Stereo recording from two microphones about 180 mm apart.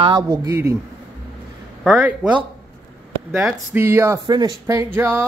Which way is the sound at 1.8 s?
5° right (ahead or behind).